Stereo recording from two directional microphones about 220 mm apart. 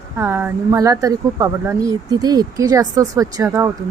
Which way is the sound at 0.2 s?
10° right (ahead or behind).